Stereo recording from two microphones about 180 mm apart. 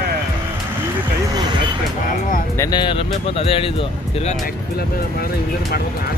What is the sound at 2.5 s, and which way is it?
Speech, 20° left (ahead or behind).